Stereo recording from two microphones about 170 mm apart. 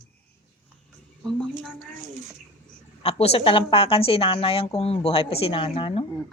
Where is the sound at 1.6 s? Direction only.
5° left (ahead or behind).